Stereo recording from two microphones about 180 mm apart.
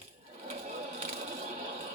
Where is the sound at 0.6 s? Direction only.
40° right (ahead or behind).